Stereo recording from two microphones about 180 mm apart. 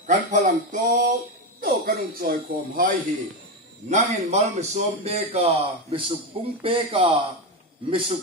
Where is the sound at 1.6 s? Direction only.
55° right (ahead or behind).